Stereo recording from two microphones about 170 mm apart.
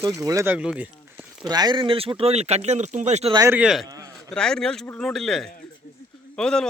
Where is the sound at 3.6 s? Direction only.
Centre (ahead or behind).